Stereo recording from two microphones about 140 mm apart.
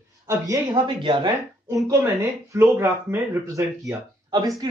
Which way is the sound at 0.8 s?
35° right (ahead or behind).